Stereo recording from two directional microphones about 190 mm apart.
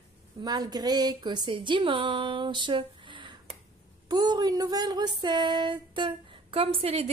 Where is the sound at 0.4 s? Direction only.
20° right (ahead or behind).